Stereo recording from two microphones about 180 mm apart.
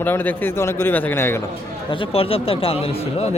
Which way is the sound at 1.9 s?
30° left (ahead or behind).